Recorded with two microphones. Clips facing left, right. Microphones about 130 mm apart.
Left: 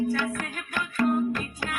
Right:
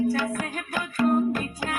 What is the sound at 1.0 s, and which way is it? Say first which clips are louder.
Music: right 2 dB; 10° right (ahead or behind).